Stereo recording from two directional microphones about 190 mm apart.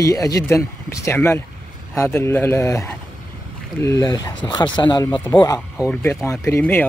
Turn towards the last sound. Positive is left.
turn(degrees=10)  # may be behind; listen again after turning